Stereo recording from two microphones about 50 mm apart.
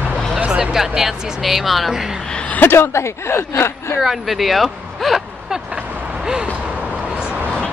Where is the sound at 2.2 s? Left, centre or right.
Centre.